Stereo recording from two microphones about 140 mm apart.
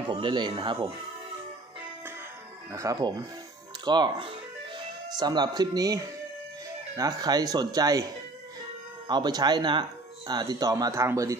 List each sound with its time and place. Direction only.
0.1 s speech: 35° right (ahead or behind)
2.7 s speech: 25° right (ahead or behind)
7.0 s speech: 30° right (ahead or behind)
9.0 s speech: 30° right (ahead or behind)